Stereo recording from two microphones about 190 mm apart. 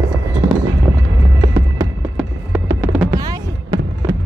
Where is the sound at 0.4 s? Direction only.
10° right (ahead or behind).